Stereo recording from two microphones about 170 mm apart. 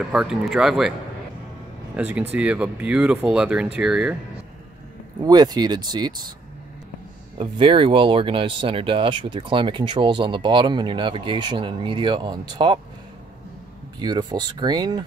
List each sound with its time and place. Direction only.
0.0 s speech: 5° right (ahead or behind)
2.0 s speech: 5° right (ahead or behind)
5.2 s speech: 25° right (ahead or behind)
7.3 s speech: 30° right (ahead or behind)
13.9 s speech: 25° right (ahead or behind)